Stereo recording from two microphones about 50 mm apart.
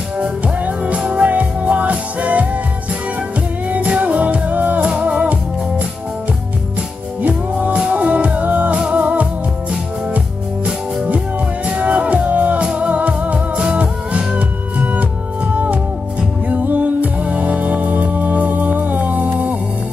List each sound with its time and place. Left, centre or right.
0.4 s music: right
3.7 s music: right
7.2 s music: right
11.3 s music: right